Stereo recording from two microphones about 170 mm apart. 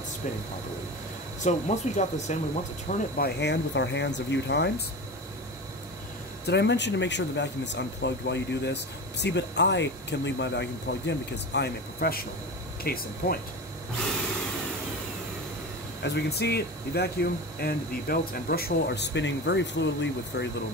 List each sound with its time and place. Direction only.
1.4 s speech: 45° left (ahead or behind)
3.2 s speech: 90° left
6.4 s speech: 90° left; by 13.4 s 60° left (ahead or behind)
16.0 s speech: 75° left (ahead or behind); by 20.4 s 90° left